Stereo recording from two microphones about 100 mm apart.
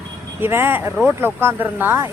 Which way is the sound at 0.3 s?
20° right (ahead or behind).